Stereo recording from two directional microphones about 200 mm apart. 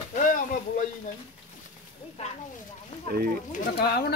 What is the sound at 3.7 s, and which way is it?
Speech, 50° left (ahead or behind).